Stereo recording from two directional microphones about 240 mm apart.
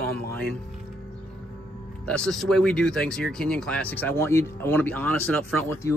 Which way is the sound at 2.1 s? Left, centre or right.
Centre.